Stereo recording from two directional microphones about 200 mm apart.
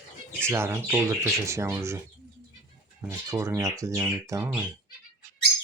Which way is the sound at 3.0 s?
15° right (ahead or behind).